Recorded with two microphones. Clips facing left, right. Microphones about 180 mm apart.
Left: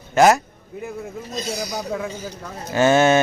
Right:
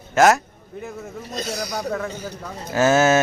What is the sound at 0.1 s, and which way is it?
Speech, centre (ahead or behind).